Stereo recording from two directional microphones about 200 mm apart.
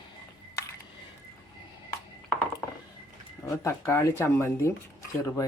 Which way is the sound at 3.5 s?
15° left (ahead or behind).